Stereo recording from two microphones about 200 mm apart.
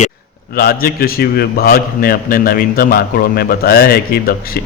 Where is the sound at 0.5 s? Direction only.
50° left (ahead or behind).